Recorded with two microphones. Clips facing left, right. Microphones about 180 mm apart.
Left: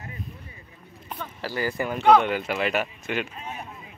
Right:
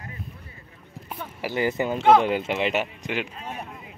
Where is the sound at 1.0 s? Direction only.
10° right (ahead or behind).